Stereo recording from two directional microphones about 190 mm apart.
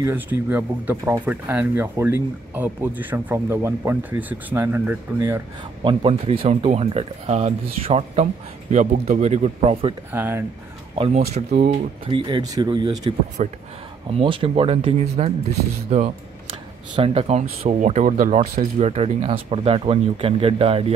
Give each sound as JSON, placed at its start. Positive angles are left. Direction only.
{"t": 0.0, "sound": "speech", "side_deg": -10}
{"t": 5.9, "sound": "speech", "side_deg": -30}
{"t": 10.1, "sound": "speech", "side_deg": -10}
{"t": 11.0, "sound": "speech", "side_deg": -35}
{"t": 13.4, "sound": "speech", "side_deg": -40}